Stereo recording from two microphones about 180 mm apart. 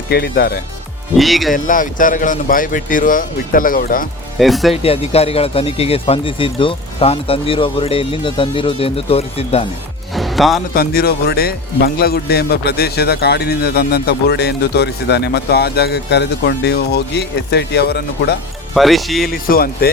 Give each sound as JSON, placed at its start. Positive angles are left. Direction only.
{"t": 0.1, "sound": "speech", "side_deg": 60}
{"t": 1.1, "sound": "speech", "side_deg": 0}
{"t": 1.5, "sound": "speech", "side_deg": 45}
{"t": 4.4, "sound": "speech", "side_deg": 0}
{"t": 4.7, "sound": "speech", "side_deg": 35}
{"t": 10.2, "sound": "music", "side_deg": 0}
{"t": 10.8, "sound": "speech", "side_deg": 55}
{"t": 18.7, "sound": "speech", "side_deg": 0}
{"t": 19.3, "sound": "speech", "side_deg": 55}